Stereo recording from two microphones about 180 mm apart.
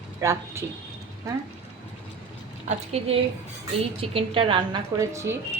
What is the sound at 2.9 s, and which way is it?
A woman's voice, 35° right (ahead or behind).